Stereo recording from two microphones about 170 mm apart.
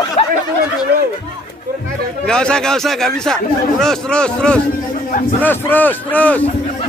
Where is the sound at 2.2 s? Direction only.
5° left (ahead or behind).